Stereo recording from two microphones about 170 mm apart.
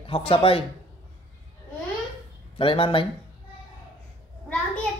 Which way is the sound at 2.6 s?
30° left (ahead or behind).